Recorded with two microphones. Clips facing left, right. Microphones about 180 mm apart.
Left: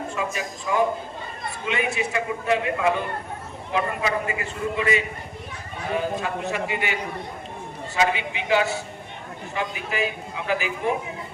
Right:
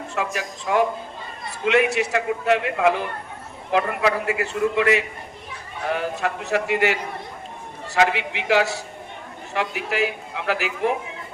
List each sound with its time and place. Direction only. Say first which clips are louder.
0.2 s a man's voice: right 5 dB; 70° right (ahead or behind)